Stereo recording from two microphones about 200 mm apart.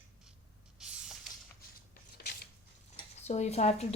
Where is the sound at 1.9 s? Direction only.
50° left (ahead or behind).